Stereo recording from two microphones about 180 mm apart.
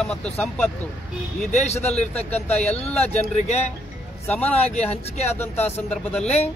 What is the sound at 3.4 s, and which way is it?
Speech, 35° left (ahead or behind).